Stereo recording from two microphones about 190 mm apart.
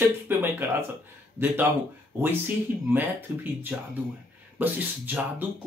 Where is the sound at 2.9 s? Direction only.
10° right (ahead or behind).